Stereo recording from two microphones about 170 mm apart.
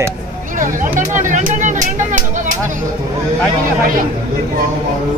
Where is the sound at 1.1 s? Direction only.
50° right (ahead or behind).